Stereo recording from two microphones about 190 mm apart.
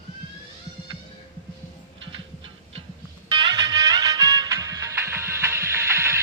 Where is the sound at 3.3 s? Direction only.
25° right (ahead or behind).